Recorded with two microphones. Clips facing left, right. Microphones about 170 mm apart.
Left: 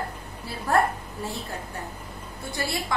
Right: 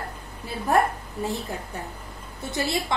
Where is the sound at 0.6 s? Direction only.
20° right (ahead or behind).